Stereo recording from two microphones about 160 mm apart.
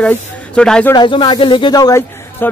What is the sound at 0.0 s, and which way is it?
Speech, 5° left (ahead or behind).